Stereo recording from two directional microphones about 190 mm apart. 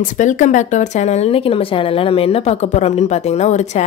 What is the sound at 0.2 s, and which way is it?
Speech, 40° left (ahead or behind).